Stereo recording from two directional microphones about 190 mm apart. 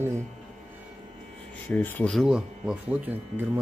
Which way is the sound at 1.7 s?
10° left (ahead or behind).